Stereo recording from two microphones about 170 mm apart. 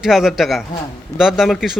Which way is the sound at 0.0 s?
Centre (ahead or behind).